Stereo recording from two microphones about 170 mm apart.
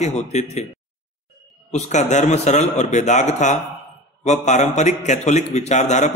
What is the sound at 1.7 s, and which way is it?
A man's voice, 45° left (ahead or behind).